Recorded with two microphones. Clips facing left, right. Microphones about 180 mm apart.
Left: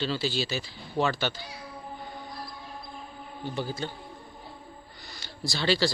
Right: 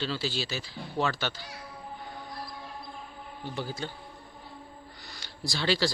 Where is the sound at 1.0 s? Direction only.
20° left (ahead or behind).